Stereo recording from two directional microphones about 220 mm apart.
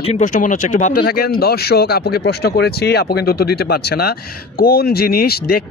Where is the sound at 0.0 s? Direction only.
30° left (ahead or behind).